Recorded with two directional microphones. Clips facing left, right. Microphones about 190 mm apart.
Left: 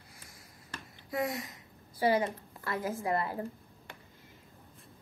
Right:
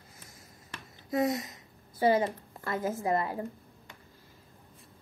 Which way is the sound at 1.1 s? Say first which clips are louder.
Right 5 dB; 20° right (ahead or behind).